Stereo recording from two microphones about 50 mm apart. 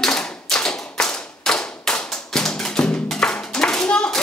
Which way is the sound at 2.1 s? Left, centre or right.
Centre.